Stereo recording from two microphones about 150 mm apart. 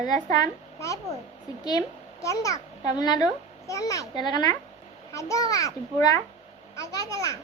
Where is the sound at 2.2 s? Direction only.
20° left (ahead or behind).